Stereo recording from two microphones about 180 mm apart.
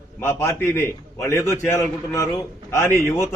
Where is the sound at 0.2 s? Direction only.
15° left (ahead or behind).